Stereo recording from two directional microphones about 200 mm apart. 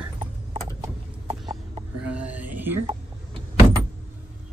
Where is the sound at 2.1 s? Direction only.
5° right (ahead or behind).